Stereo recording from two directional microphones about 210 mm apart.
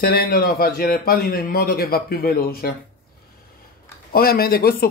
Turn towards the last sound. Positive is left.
turn(degrees=45)  # may be behind; listen again after turning